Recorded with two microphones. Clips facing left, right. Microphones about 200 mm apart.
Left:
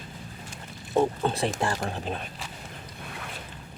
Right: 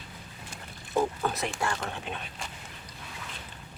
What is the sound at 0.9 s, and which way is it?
Speech, 25° left (ahead or behind).